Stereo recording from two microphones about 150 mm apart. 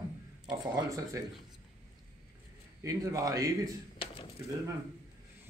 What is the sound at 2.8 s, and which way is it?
Speech, 20° right (ahead or behind).